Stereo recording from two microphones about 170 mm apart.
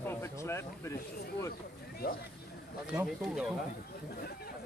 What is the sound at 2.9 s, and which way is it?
Speech, 5° right (ahead or behind).